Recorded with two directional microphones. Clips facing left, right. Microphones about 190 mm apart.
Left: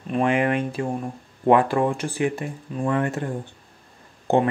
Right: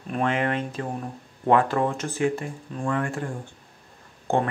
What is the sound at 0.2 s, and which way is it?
Speech, 15° left (ahead or behind).